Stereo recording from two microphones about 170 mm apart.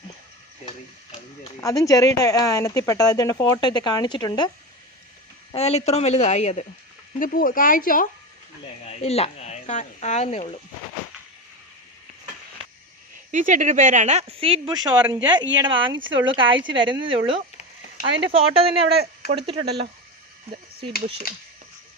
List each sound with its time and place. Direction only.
1.6 s speech: 20° left (ahead or behind)
5.5 s speech: 40° left (ahead or behind)
7.2 s speech: 55° left (ahead or behind)
9.0 s speech: 40° left (ahead or behind)
13.3 s speech: 50° right (ahead or behind)